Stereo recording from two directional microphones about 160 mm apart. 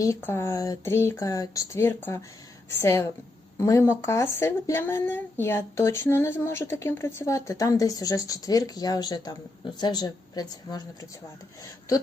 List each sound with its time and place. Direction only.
0.0 s speech: 15° left (ahead or behind)